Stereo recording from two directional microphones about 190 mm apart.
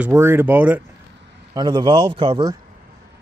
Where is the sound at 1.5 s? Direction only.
20° right (ahead or behind).